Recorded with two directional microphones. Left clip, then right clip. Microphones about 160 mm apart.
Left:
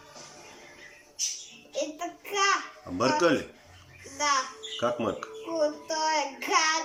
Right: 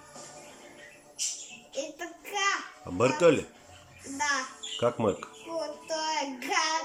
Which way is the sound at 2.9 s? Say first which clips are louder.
Right 1 dB; 20° right (ahead or behind).